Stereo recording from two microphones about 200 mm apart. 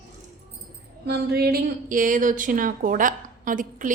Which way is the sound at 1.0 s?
55° right (ahead or behind).